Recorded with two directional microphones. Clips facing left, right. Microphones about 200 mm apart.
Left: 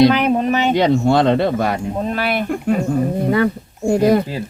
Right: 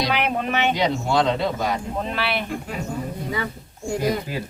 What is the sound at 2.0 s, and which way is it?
Speech, 45° left (ahead or behind).